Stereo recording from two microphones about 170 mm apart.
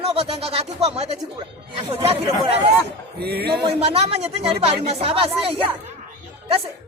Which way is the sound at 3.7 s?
35° right (ahead or behind).